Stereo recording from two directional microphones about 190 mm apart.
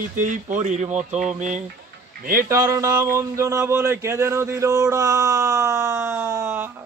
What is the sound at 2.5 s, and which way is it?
Speech, 15° right (ahead or behind).